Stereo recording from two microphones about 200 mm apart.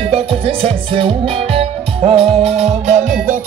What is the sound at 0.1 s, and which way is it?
Music, 30° right (ahead or behind).